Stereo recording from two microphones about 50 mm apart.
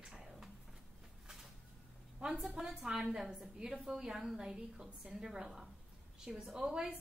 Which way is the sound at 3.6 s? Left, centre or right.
Centre.